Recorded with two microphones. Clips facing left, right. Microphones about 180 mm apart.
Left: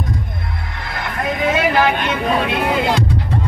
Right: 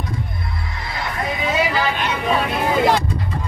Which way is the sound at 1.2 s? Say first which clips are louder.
Left 4 dB; 55° left (ahead or behind).